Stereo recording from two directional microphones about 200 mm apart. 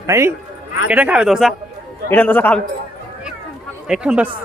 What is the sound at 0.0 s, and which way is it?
A man's voice, 15° right (ahead or behind).